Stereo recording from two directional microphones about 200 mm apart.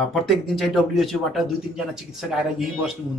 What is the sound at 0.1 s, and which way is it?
Speech, centre (ahead or behind).